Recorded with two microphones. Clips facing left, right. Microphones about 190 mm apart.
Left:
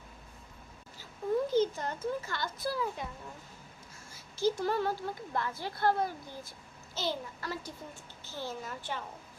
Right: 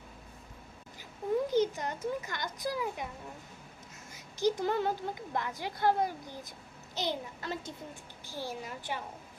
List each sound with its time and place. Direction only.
1.5 s a woman's voice: 15° right (ahead or behind)
4.1 s a woman's voice: 15° right (ahead or behind)